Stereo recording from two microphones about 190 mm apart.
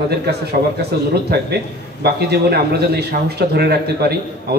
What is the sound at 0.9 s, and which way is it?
A man's voice, 60° right (ahead or behind).